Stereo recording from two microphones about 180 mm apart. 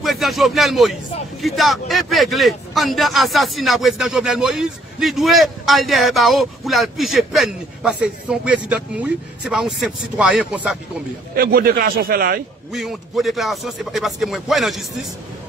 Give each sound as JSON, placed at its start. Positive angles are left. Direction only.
{"t": 0.0, "sound": "a man's voice", "side_deg": 0}
{"t": 11.3, "sound": "a man's voice", "side_deg": -55}
{"t": 12.7, "sound": "a man's voice", "side_deg": 0}